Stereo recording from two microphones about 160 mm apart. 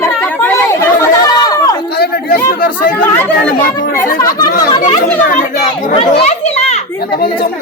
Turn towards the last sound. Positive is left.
turn(degrees=40)  # may be behind; listen again after turning